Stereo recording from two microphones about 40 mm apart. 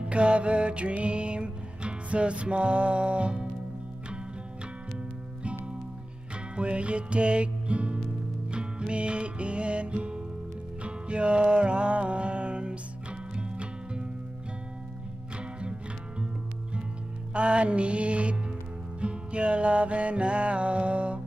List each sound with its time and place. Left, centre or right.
0.0 s music: right
5.4 s music: right
17.3 s music: right